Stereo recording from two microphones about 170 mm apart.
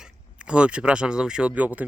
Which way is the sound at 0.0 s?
5° right (ahead or behind).